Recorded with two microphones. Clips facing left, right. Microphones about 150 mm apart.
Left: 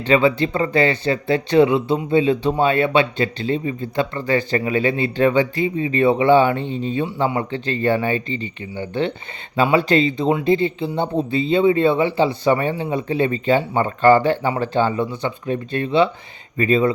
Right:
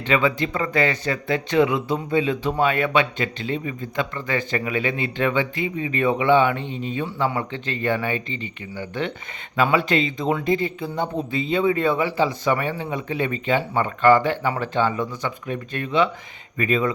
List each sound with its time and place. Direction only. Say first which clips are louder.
0.0 s speech: left 5 dB; 30° left (ahead or behind)